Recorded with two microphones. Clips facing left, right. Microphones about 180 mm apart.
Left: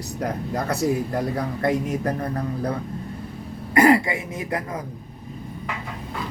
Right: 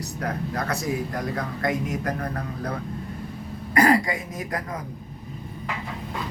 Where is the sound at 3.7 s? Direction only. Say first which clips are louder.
Left 3 dB; 25° left (ahead or behind).